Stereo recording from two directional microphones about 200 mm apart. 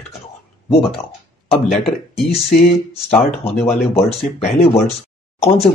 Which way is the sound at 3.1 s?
30° left (ahead or behind).